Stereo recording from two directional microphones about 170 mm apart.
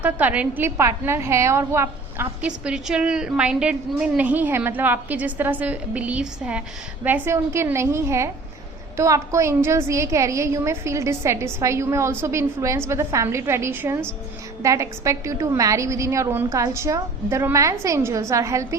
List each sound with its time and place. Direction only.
0.0 s a woman's voice: 10° right (ahead or behind)